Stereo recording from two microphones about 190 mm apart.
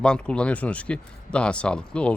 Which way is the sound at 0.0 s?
5° left (ahead or behind).